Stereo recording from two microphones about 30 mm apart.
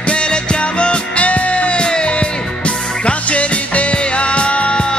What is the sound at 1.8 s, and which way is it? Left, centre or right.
Music, left.